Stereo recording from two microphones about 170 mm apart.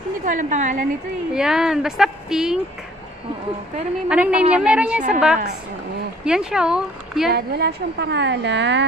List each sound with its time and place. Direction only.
0.2 s a woman's voice: 50° right (ahead or behind)
1.3 s speech: 5° right (ahead or behind)
4.1 s a woman's voice: 5° right (ahead or behind)
7.3 s a woman's voice: 75° right (ahead or behind); by 8.8 s 90° right